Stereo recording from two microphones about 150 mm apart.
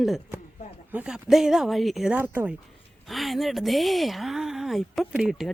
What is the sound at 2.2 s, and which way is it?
Speech, 10° right (ahead or behind).